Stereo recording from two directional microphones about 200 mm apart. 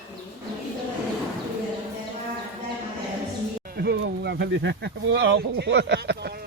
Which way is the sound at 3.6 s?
50° right (ahead or behind).